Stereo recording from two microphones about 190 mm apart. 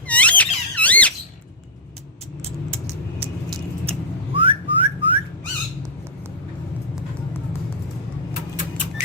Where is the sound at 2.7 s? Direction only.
35° right (ahead or behind).